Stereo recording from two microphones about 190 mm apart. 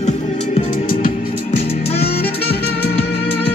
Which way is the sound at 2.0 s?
55° left (ahead or behind).